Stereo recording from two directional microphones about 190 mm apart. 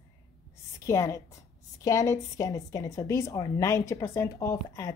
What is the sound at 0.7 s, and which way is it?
A woman's voice, 15° left (ahead or behind).